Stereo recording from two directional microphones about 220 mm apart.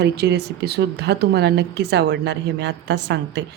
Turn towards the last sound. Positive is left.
turn(degrees=-50)  # may be behind; listen again after turning